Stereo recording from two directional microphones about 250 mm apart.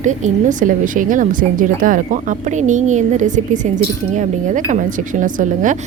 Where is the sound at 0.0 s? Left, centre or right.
Right.